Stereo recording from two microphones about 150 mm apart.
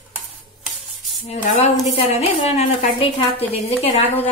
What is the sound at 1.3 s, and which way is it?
A woman's voice, 45° left (ahead or behind).